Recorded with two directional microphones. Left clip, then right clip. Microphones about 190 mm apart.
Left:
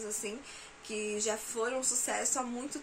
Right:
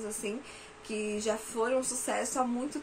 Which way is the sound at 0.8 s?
5° left (ahead or behind).